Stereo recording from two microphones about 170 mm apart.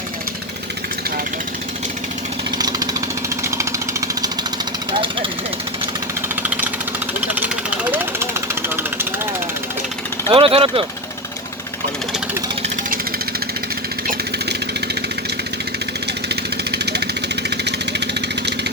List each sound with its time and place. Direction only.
2.6 s a sound: 20° right (ahead or behind)
4.9 s jackhammer: 30° right (ahead or behind)
6.2 s engine: 10° right (ahead or behind)
7.3 s vehicle: 10° right (ahead or behind)
10.2 s speech: 30° right (ahead or behind)
16.3 s vehicle: 75° right (ahead or behind)